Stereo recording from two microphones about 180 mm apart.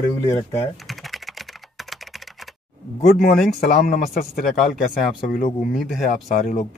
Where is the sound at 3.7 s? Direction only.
50° left (ahead or behind).